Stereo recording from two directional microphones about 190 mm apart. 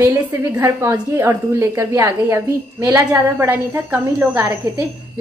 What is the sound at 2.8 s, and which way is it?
Speech, 10° right (ahead or behind).